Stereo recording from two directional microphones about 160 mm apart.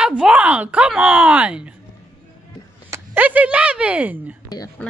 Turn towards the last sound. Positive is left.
turn(degrees=25)  # may be behind; listen again after turning